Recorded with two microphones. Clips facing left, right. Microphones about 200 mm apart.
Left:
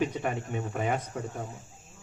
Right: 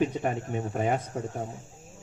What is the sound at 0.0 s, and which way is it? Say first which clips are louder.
Speech: right 2 dB; 35° right (ahead or behind).